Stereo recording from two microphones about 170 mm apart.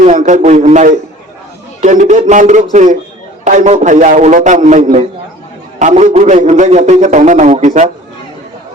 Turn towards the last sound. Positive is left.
turn(degrees=-45)  # may be behind; listen again after turning